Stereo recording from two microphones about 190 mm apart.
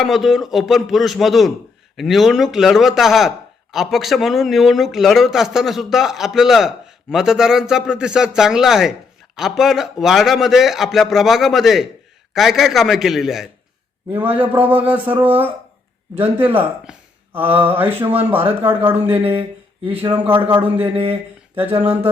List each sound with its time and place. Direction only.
0.0 s a man's voice: centre (ahead or behind)
20.9 s speech: 30° right (ahead or behind)
21.5 s speech: 10° right (ahead or behind)